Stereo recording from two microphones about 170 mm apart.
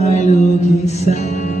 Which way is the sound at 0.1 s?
45° left (ahead or behind).